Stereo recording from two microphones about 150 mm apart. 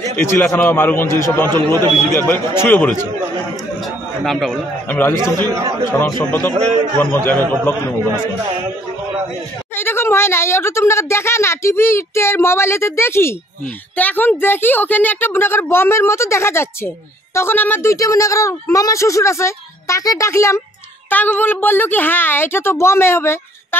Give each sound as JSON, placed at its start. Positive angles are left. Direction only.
{"t": 0.1, "sound": "a woman's voice", "side_deg": 15}
{"t": 4.2, "sound": "a man's voice", "side_deg": 0}
{"t": 4.8, "sound": "a woman's voice", "side_deg": 15}
{"t": 9.8, "sound": "a woman's voice", "side_deg": 15}